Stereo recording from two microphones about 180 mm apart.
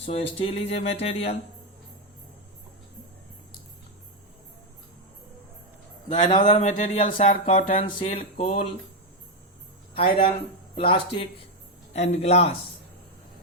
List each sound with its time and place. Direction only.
0.0 s speech: 35° left (ahead or behind)
6.1 s speech: 35° left (ahead or behind)
9.9 s speech: 30° left (ahead or behind)